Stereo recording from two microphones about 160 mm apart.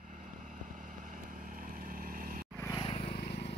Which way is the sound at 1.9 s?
60° right (ahead or behind).